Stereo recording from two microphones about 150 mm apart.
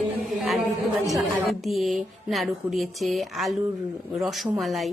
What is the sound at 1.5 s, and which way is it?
A woman's voice, centre (ahead or behind).